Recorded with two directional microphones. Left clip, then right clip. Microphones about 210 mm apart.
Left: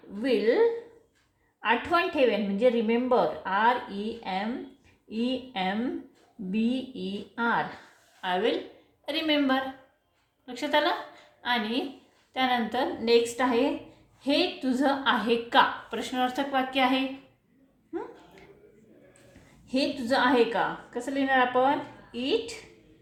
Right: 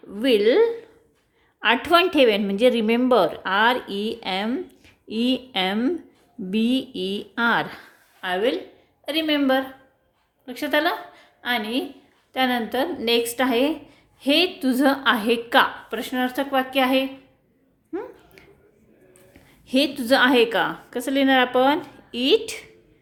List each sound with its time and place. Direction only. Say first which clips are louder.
0.2 s a woman's voice: right 6 dB; 45° right (ahead or behind)
8.2 s a woman's voice: right 4 dB; 35° right (ahead or behind)
19.6 s a woman's voice: right 7 dB; 45° right (ahead or behind)